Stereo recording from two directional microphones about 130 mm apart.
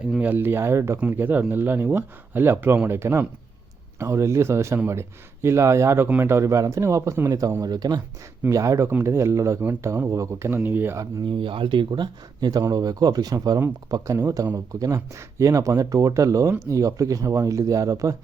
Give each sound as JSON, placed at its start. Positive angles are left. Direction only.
{"t": 0.0, "sound": "speech", "side_deg": -10}
{"t": 11.3, "sound": "speech", "side_deg": -40}